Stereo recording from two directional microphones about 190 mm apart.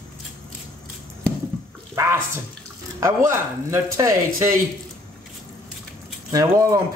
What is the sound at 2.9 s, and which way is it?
Speech, 15° right (ahead or behind).